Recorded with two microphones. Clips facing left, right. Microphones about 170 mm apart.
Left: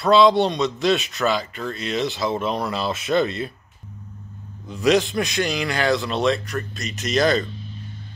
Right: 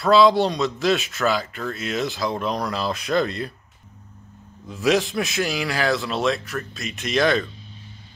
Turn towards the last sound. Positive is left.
turn(degrees=0)  # may be behind; listen again after turning